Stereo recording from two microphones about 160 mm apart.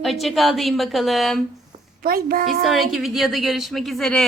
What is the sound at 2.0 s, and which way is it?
Speech, 65° right (ahead or behind).